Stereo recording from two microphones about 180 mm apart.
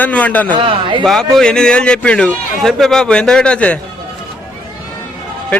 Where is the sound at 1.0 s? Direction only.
5° left (ahead or behind).